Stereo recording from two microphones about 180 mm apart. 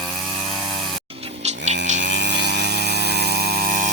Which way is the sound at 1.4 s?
40° right (ahead or behind).